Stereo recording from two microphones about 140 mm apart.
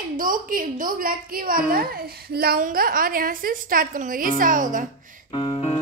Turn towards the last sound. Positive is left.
turn(degrees=40)  # may be behind; listen again after turning